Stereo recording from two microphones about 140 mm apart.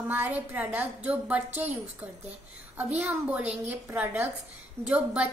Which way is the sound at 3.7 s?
10° right (ahead or behind).